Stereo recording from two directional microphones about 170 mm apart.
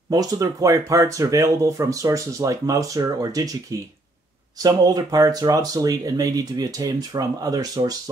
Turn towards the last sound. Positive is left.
turn(degrees=-25)  # may be behind; listen again after turning